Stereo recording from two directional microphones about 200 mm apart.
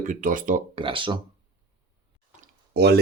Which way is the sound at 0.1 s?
40° right (ahead or behind).